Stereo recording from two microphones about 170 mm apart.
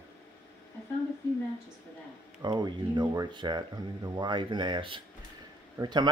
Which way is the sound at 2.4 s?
25° right (ahead or behind).